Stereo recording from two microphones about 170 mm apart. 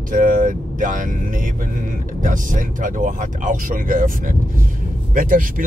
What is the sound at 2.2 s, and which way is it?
Speech, 50° right (ahead or behind).